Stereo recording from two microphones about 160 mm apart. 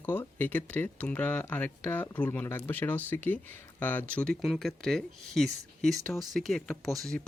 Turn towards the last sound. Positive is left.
turn(degrees=0)  # may be behind; listen again after turning